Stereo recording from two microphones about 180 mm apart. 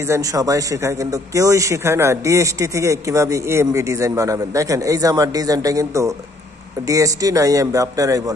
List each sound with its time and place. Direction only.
0.0 s a man's voice: 15° right (ahead or behind)